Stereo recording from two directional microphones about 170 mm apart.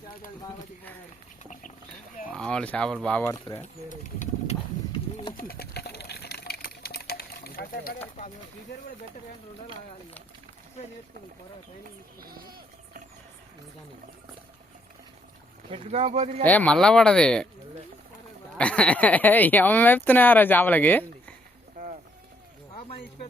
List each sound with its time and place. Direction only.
2.3 s speech: 5° left (ahead or behind)
3.3 s speech: 25° left (ahead or behind)
3.6 s speech: 45° left (ahead or behind)
4.9 s bird: 30° left (ahead or behind)
5.4 s water: 65° left (ahead or behind)
12.2 s a sound: 60° right (ahead or behind)
15.7 s speech: 40° right (ahead or behind)
16.4 s speech: 10° left (ahead or behind)
18.5 s speech: 5° left (ahead or behind)